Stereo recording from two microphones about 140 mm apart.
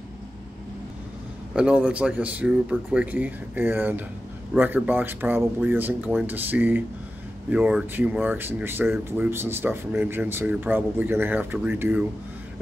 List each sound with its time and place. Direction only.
1.5 s speech: 5° right (ahead or behind)